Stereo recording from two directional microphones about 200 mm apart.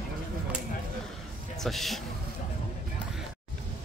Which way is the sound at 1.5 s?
Centre (ahead or behind).